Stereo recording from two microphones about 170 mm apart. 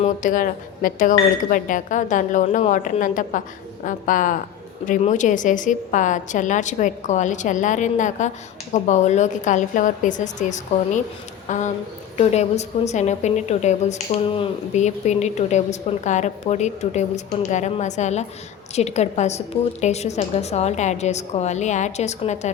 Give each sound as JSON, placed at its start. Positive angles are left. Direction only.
{"t": 0.0, "sound": "a woman's voice", "side_deg": 50}